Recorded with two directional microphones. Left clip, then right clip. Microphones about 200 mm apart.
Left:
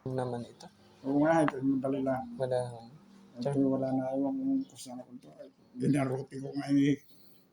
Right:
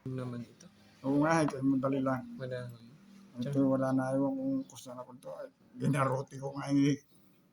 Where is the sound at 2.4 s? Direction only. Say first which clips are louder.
Left 9 dB; 10° left (ahead or behind).